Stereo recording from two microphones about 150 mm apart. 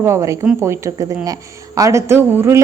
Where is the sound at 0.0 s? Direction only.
20° right (ahead or behind).